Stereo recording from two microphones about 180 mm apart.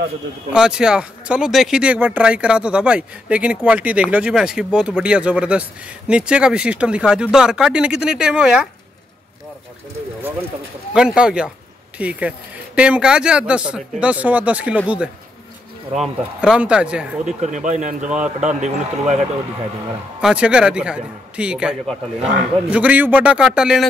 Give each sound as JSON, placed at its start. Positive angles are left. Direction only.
{"t": 0.5, "sound": "speech", "side_deg": -5}
{"t": 10.9, "sound": "a man's voice", "side_deg": -5}
{"t": 16.0, "sound": "speech", "side_deg": -5}
{"t": 17.4, "sound": "speech", "side_deg": -40}
{"t": 18.0, "sound": "a man's voice", "side_deg": -5}
{"t": 18.4, "sound": "speech", "side_deg": -40}
{"t": 20.2, "sound": "a man's voice", "side_deg": -5}